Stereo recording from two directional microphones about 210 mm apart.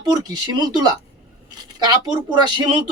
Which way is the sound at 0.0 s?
20° right (ahead or behind).